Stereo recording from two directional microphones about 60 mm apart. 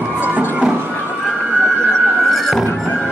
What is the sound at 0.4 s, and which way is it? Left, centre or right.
Music, right.